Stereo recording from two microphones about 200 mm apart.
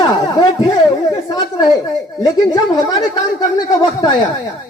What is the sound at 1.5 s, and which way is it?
A woman's voice, 20° left (ahead or behind).